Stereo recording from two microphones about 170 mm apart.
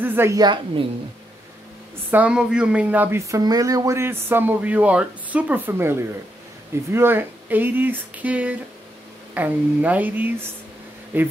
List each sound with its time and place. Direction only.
0.0 s a woman's voice: 15° right (ahead or behind)
2.0 s speech: 10° right (ahead or behind)